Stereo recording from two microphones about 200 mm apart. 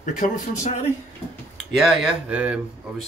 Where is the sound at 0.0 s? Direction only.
40° left (ahead or behind).